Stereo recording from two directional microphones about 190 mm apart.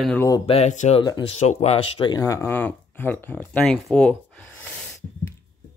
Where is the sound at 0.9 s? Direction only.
25° left (ahead or behind).